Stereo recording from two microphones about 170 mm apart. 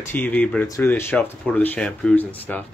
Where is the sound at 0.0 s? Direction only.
10° left (ahead or behind).